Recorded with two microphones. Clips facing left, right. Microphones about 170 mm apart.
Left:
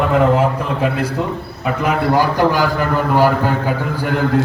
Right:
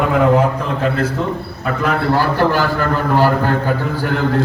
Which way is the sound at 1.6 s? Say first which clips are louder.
Even; 10° left (ahead or behind).